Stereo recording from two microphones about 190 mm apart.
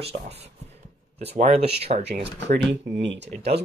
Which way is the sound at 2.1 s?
65° right (ahead or behind).